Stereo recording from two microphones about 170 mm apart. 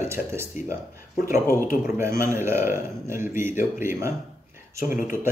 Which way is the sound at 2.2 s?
15° right (ahead or behind).